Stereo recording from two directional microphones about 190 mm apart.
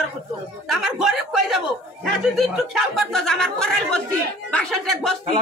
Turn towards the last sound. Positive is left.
turn(degrees=0)  # may be behind; listen again after turning